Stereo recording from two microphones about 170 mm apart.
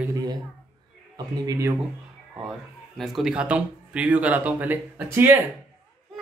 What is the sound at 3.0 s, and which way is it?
Speech, centre (ahead or behind).